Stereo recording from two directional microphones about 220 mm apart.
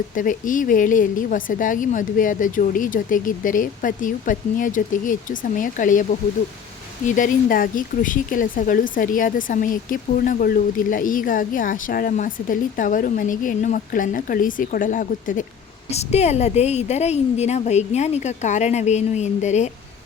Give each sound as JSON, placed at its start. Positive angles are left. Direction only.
{"t": 0.2, "sound": "speech", "side_deg": 35}